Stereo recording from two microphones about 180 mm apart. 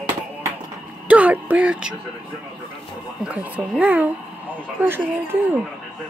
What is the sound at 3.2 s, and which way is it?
Speech, 10° right (ahead or behind).